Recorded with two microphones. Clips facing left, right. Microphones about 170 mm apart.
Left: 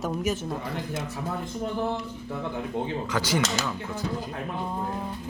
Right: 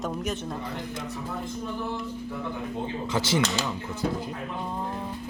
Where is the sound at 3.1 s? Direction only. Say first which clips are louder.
Right 1 dB; 25° right (ahead or behind).